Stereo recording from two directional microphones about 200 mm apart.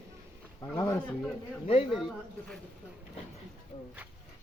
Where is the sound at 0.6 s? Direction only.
15° left (ahead or behind).